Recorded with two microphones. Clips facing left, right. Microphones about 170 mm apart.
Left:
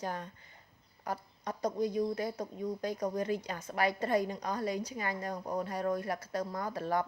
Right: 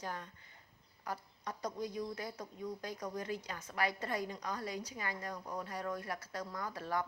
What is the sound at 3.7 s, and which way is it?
Speech, 20° left (ahead or behind).